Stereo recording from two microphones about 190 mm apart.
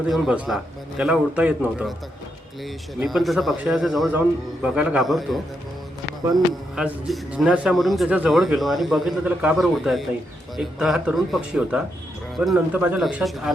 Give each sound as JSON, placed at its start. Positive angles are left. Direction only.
{"t": 0.1, "sound": "a man's voice", "side_deg": 0}
{"t": 3.0, "sound": "a man's voice", "side_deg": 0}
{"t": 6.7, "sound": "a man's voice", "side_deg": -5}